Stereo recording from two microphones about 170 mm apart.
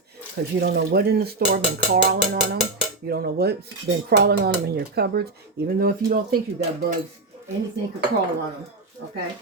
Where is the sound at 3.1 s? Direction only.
65° right (ahead or behind).